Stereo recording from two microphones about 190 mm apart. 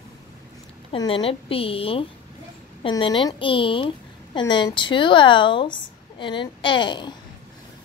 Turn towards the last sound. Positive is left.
turn(degrees=25)  # may be behind; listen again after turning